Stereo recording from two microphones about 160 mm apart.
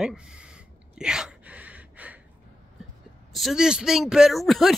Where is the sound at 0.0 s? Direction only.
5° right (ahead or behind).